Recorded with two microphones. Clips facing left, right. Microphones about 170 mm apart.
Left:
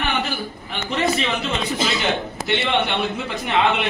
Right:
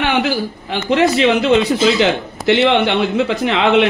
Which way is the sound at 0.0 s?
90° right.